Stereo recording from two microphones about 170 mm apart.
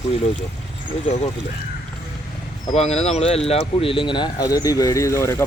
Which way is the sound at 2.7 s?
40° left (ahead or behind).